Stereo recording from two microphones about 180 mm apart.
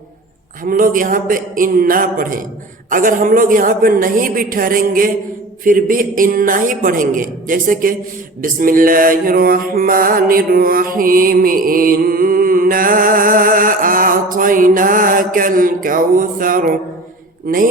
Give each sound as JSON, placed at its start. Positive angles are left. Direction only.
{"t": 0.6, "sound": "mantra", "side_deg": -50}